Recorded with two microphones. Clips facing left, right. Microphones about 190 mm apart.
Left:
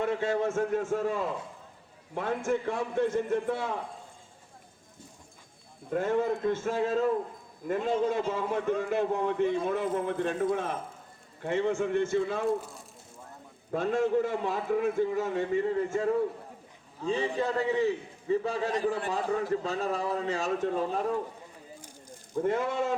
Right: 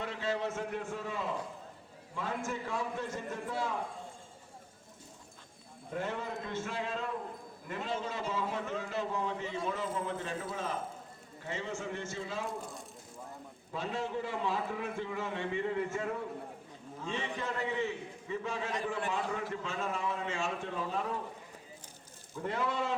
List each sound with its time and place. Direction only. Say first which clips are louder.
0.0 s a man's voice: left 7 dB; 50° left (ahead or behind)
5.9 s a man's voice: left 10 dB; 50° left (ahead or behind)
13.7 s a man's voice: left 10 dB; 50° left (ahead or behind)
17.1 s a man's voice: left 9 dB; 35° left (ahead or behind)
22.4 s a man's voice: left 6 dB; 50° left (ahead or behind)